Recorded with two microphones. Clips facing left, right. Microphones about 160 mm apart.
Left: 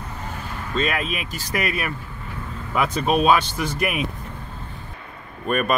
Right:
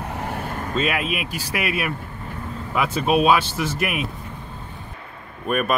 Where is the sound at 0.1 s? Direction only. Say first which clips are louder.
Right 5 dB; 65° right (ahead or behind); by 0.7 s 50° right (ahead or behind).